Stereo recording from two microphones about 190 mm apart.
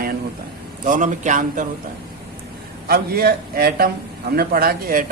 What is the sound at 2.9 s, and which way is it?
A man's voice, 55° right (ahead or behind).